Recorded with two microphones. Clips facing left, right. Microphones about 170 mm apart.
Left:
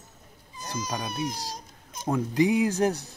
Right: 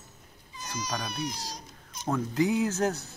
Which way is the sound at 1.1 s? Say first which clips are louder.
Left 3 dB; 50° left (ahead or behind).